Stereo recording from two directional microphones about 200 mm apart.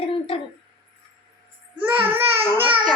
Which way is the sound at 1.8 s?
10° right (ahead or behind).